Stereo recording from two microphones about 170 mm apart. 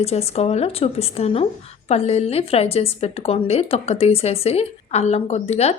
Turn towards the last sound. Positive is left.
turn(degrees=40)  # may be behind; listen again after turning